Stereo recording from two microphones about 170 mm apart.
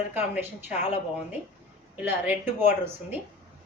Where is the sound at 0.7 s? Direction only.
40° left (ahead or behind).